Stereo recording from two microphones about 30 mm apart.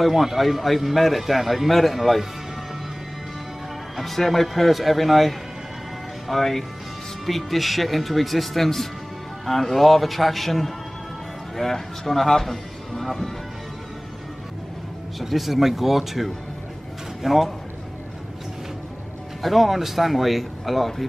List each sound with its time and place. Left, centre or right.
0.0 s a man's voice: centre
3.9 s a man's voice: centre
15.1 s a man's voice: centre
19.4 s a man's voice: centre